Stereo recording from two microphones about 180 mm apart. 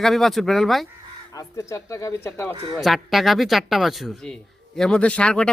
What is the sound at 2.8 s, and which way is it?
Speech, centre (ahead or behind).